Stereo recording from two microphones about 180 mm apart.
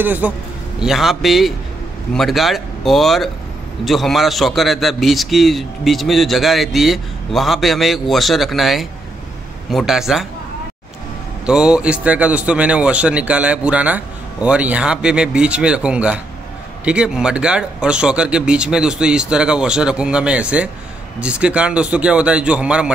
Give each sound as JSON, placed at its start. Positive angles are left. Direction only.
{"t": 0.0, "sound": "a man's voice", "side_deg": -10}
{"t": 11.4, "sound": "a man's voice", "side_deg": -5}